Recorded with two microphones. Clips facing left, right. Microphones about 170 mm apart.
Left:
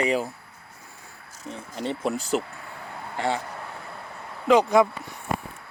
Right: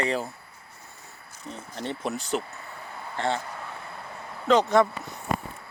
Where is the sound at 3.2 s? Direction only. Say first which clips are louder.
Left 1 dB; 10° left (ahead or behind).